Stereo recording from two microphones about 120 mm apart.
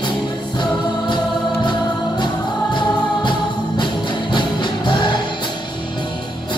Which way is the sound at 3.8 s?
40° left (ahead or behind).